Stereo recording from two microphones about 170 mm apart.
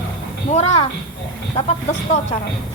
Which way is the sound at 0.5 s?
40° left (ahead or behind).